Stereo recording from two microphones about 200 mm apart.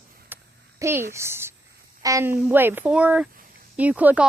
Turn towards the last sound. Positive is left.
turn(degrees=-5)  # may be behind; listen again after turning